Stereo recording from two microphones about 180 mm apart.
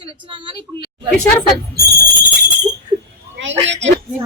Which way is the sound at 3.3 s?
90° right.